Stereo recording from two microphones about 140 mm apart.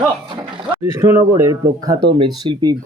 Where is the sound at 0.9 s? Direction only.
20° right (ahead or behind).